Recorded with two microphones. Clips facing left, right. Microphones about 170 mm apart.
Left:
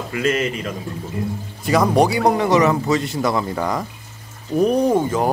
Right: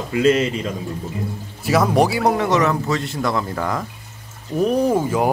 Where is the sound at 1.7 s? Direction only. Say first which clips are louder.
Left 1 dB; 5° right (ahead or behind).